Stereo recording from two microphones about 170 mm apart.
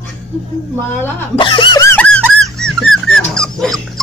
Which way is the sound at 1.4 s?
30° left (ahead or behind).